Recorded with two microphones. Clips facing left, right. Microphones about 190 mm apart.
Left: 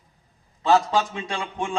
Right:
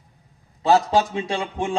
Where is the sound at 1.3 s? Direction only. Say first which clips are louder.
Right 3 dB; 35° right (ahead or behind).